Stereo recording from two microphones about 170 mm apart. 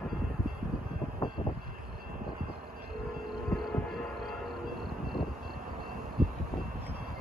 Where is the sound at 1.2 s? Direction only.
25° left (ahead or behind).